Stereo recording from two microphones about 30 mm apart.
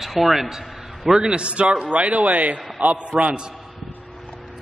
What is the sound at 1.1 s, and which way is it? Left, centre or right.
A man's voice, right.